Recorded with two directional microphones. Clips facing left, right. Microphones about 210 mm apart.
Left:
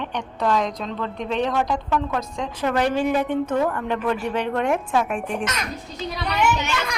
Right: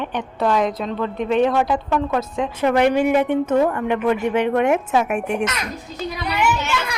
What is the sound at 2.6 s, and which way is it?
Speech, 20° right (ahead or behind).